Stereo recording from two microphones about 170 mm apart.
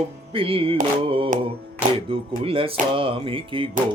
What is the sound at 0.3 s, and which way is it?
Music, 30° right (ahead or behind).